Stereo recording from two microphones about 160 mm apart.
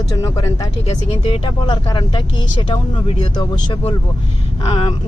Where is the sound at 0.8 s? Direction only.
40° left (ahead or behind).